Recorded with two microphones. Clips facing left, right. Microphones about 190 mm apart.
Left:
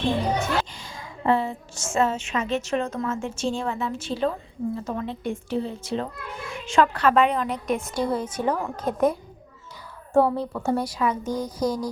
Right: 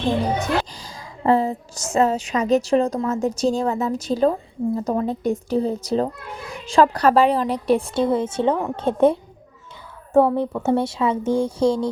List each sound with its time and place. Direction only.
0.8 s a woman's voice: 35° right (ahead or behind)
10.3 s a woman's voice: 20° right (ahead or behind)